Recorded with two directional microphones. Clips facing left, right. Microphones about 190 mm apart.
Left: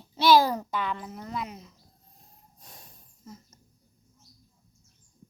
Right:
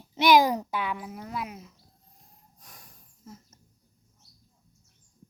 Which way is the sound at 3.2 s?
5° right (ahead or behind).